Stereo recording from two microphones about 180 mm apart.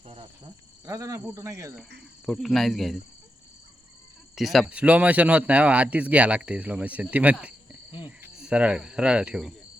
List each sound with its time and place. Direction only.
0.9 s a man's voice: 20° right (ahead or behind)
2.2 s speech: centre (ahead or behind)
4.4 s a man's voice: centre (ahead or behind)
8.2 s cricket: 5° right (ahead or behind)